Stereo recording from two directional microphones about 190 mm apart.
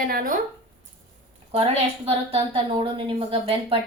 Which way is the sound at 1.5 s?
30° right (ahead or behind).